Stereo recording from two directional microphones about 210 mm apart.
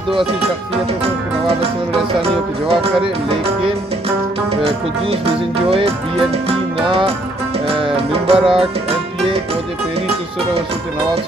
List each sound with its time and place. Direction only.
1.0 s speech: 25° right (ahead or behind)
7.6 s speech: 25° right (ahead or behind)